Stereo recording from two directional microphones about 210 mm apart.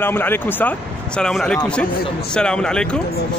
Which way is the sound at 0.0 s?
10° left (ahead or behind).